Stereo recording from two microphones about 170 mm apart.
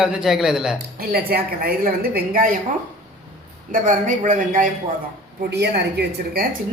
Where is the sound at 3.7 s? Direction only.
50° right (ahead or behind).